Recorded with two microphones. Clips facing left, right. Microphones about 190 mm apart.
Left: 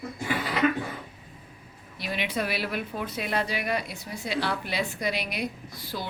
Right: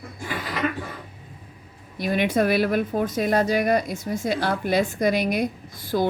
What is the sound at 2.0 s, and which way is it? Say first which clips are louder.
A woman's voice: right 9 dB; 50° right (ahead or behind).